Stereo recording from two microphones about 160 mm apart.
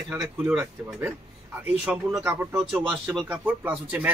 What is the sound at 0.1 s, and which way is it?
Speech, 5° right (ahead or behind).